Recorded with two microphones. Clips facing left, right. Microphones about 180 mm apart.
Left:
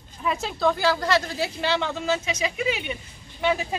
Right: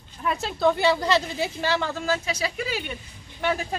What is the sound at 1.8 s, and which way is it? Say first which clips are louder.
Speech: left 1 dB; centre (ahead or behind).